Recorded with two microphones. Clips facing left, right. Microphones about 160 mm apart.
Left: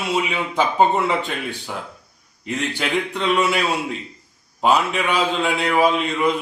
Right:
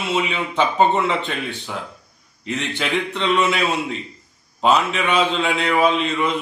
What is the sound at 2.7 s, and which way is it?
A man's voice, 5° left (ahead or behind).